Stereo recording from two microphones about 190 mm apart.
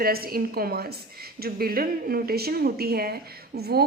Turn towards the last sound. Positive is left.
turn(degrees=-55)  # may be behind; listen again after turning